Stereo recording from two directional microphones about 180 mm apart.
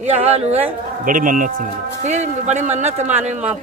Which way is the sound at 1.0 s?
45° right (ahead or behind).